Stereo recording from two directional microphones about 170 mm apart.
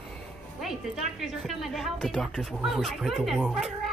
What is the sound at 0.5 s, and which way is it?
A woman's voice, centre (ahead or behind).